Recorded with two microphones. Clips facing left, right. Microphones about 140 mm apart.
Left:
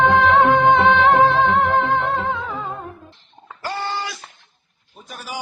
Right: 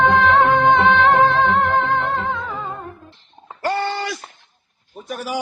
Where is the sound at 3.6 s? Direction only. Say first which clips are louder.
Right 5 dB; 60° right (ahead or behind).